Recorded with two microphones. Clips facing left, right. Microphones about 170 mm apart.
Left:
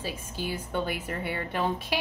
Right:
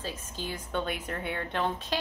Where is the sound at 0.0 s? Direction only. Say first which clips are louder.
Left 3 dB; 10° left (ahead or behind).